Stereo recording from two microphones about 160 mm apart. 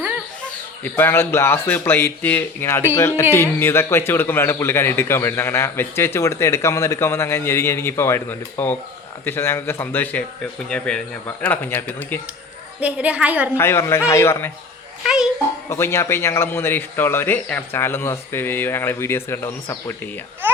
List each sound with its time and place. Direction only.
0.9 s speech: 15° left (ahead or behind)
12.8 s a woman's voice: 10° right (ahead or behind)
13.6 s speech: 15° left (ahead or behind)
15.0 s speech: 5° right (ahead or behind)
15.7 s speech: 15° left (ahead or behind)
20.4 s a sound: 10° right (ahead or behind)